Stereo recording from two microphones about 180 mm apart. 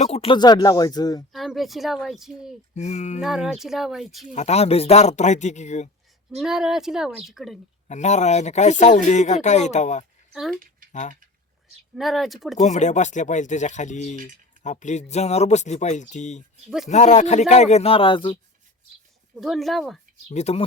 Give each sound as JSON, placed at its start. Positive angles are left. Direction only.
{"t": 0.0, "sound": "speech", "side_deg": 35}
{"t": 1.3, "sound": "speech", "side_deg": 0}
{"t": 2.7, "sound": "speech", "side_deg": 40}
{"t": 3.2, "sound": "speech", "side_deg": 0}
{"t": 4.4, "sound": "speech", "side_deg": 35}
{"t": 6.4, "sound": "speech", "side_deg": 0}
{"t": 7.9, "sound": "speech", "side_deg": 40}
{"t": 10.3, "sound": "speech", "side_deg": 0}
{"t": 11.9, "sound": "speech", "side_deg": 0}
{"t": 12.5, "sound": "speech", "side_deg": 40}
{"t": 16.6, "sound": "speech", "side_deg": 0}
{"t": 16.9, "sound": "speech", "side_deg": 40}
{"t": 19.4, "sound": "speech", "side_deg": 0}
{"t": 20.3, "sound": "speech", "side_deg": 35}